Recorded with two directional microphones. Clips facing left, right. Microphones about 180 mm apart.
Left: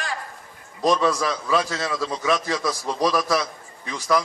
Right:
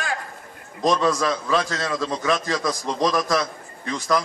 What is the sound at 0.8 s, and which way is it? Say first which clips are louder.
A man's voice: even; 5° left (ahead or behind).